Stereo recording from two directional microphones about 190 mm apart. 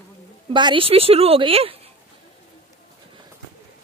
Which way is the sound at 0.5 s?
25° right (ahead or behind).